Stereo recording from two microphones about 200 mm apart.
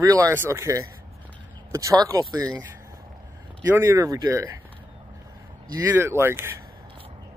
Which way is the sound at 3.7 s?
15° right (ahead or behind).